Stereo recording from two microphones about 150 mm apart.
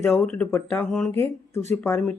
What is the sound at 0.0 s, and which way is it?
A woman's voice, 10° left (ahead or behind).